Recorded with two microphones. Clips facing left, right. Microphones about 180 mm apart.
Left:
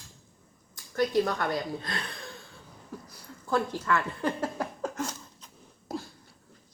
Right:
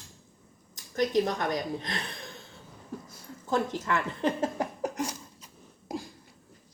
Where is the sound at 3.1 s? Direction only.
20° right (ahead or behind).